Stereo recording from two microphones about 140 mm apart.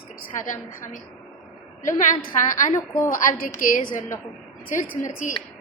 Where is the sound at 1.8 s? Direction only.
65° left (ahead or behind).